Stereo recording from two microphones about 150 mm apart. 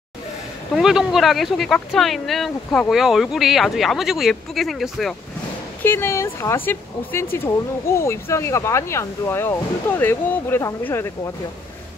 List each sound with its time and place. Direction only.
0.7 s speech: 5° right (ahead or behind)
5.8 s speech: 15° left (ahead or behind)